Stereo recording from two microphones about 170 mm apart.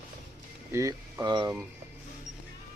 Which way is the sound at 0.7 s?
20° right (ahead or behind).